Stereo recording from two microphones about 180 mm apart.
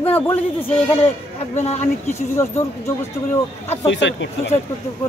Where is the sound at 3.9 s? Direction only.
90° left.